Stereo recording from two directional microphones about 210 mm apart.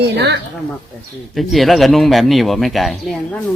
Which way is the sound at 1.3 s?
Centre (ahead or behind).